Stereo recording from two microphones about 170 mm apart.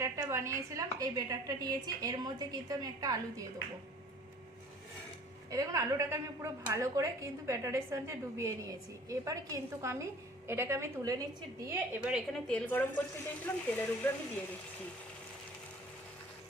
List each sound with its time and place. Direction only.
0.0 s a woman's voice: 15° right (ahead or behind)
5.5 s a woman's voice: 20° right (ahead or behind)
11.9 s a woman's voice: 10° right (ahead or behind)
12.3 s speech: 5° left (ahead or behind)